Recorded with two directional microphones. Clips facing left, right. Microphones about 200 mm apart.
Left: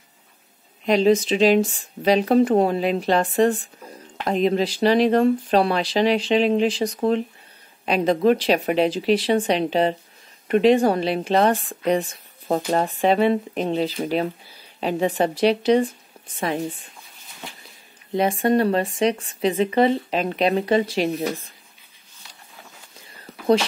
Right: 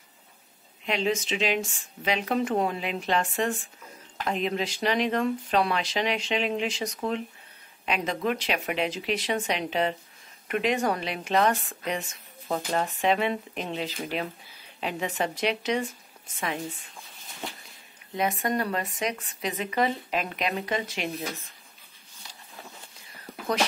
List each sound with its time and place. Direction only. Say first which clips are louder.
0.8 s speech: left 10 dB; 40° left (ahead or behind)
18.1 s speech: left 8 dB; 30° left (ahead or behind)
23.3 s a sound: right 1 dB; 15° right (ahead or behind)